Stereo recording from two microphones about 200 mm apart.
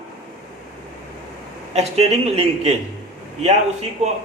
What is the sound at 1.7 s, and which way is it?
Speech, 30° right (ahead or behind).